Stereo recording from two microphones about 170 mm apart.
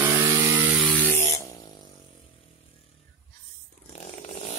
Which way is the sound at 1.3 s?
20° left (ahead or behind).